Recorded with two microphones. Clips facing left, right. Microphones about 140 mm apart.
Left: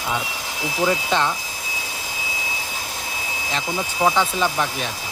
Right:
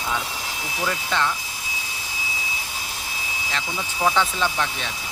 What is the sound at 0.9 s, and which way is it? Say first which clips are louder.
Speech: left 3 dB; 25° left (ahead or behind).